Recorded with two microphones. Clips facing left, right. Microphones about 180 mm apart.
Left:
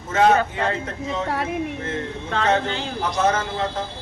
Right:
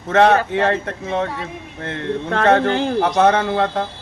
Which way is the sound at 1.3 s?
70° left (ahead or behind).